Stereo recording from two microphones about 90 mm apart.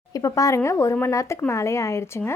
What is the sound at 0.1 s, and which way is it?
Speech, 35° left (ahead or behind).